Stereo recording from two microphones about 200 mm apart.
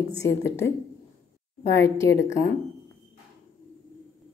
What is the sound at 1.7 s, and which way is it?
Speech, 15° left (ahead or behind).